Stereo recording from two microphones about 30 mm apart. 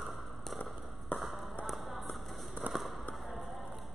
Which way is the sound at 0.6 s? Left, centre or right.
Left.